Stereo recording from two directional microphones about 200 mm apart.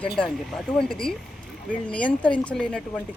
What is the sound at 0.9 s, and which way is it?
Speech, 5° left (ahead or behind).